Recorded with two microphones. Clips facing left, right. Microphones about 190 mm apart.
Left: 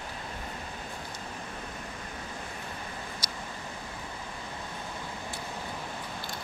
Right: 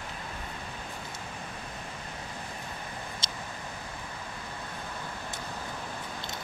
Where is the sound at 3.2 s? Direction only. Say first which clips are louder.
Even; 25° right (ahead or behind).